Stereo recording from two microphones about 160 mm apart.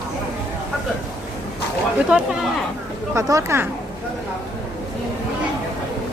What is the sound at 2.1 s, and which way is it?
Speech, 5° right (ahead or behind).